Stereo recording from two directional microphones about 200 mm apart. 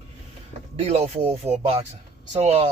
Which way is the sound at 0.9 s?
30° right (ahead or behind).